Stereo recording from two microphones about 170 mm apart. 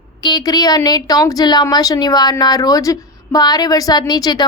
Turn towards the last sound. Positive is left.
turn(degrees=25)  # may be behind; listen again after turning